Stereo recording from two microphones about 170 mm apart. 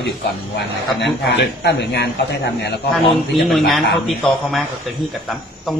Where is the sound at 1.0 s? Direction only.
90° left.